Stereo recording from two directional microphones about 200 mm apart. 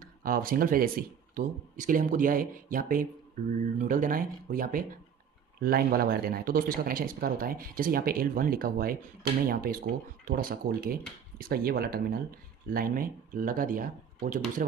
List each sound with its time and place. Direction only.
0.0 s speech: 45° right (ahead or behind)